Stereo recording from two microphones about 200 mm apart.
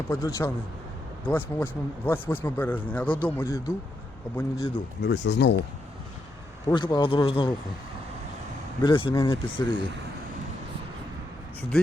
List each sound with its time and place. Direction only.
0.1 s speech: 15° left (ahead or behind)
5.0 s speech: 60° left (ahead or behind)
6.7 s speech: 25° left (ahead or behind)
8.8 s speech: 25° left (ahead or behind)